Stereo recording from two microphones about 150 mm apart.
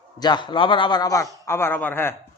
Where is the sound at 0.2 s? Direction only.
30° left (ahead or behind).